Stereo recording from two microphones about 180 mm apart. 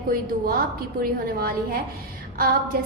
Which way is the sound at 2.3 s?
55° right (ahead or behind).